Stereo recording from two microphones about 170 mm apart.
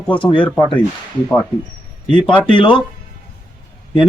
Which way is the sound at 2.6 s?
30° left (ahead or behind).